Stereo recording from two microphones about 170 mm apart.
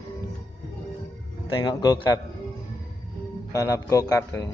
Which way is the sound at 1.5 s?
25° left (ahead or behind).